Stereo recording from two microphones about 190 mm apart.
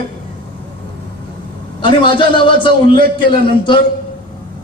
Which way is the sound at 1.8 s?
25° left (ahead or behind).